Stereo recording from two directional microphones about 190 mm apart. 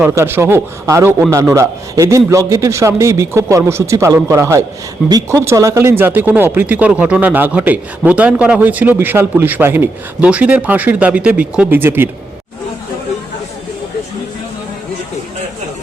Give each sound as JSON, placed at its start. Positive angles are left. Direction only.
{"t": 0.0, "sound": "speech", "side_deg": -15}